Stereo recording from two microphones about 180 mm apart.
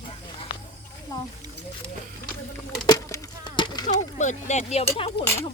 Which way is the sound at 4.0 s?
40° left (ahead or behind).